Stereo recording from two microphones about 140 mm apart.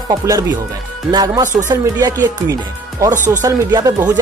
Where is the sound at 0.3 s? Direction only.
25° right (ahead or behind).